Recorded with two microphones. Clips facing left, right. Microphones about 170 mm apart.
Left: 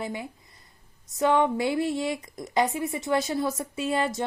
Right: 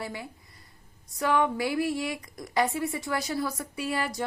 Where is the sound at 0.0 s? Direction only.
20° left (ahead or behind).